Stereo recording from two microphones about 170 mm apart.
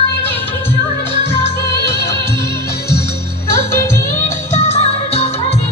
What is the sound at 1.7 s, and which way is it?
Music, 75° left (ahead or behind).